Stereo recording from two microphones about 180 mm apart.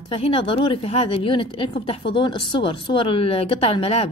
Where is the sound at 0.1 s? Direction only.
30° left (ahead or behind).